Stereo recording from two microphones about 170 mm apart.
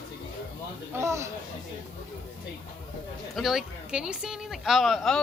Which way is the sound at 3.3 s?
Centre (ahead or behind).